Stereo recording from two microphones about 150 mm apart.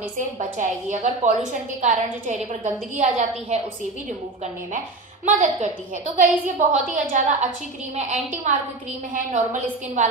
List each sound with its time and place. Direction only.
0.2 s a woman's voice: 55° right (ahead or behind)
4.7 s a woman's voice: 55° right (ahead or behind)